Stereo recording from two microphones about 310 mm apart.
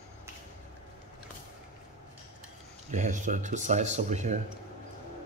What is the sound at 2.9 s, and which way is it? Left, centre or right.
Speech, right.